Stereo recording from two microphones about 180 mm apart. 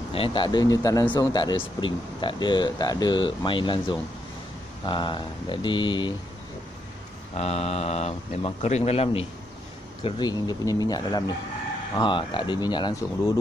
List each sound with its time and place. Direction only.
0.1 s speech: 30° left (ahead or behind)
7.3 s speech: 35° left (ahead or behind)